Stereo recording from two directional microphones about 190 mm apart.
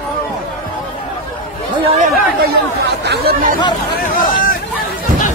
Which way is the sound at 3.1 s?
50° right (ahead or behind).